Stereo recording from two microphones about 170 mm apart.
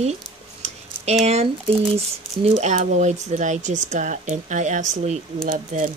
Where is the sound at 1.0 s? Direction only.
40° right (ahead or behind).